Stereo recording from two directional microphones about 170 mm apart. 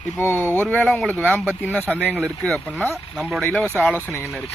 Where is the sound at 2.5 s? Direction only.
Centre (ahead or behind).